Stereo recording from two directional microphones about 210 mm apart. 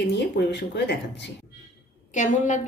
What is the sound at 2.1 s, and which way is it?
Speech, 35° left (ahead or behind).